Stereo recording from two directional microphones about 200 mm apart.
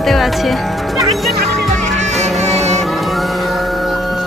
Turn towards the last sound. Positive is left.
turn(degrees=0)  # may be behind; listen again after turning